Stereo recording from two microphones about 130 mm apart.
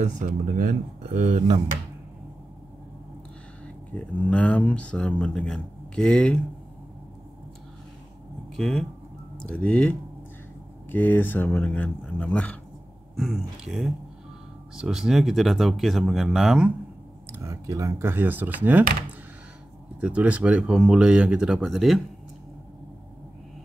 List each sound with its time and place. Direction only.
0.0 s speech: 90° right
3.6 s speech: 10° left (ahead or behind)
8.5 s speech: 5° left (ahead or behind)
13.1 s speech: centre (ahead or behind)
17.3 s speech: 25° right (ahead or behind)
20.0 s speech: 10° right (ahead or behind)